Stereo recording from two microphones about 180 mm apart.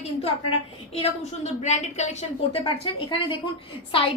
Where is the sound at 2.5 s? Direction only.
30° left (ahead or behind).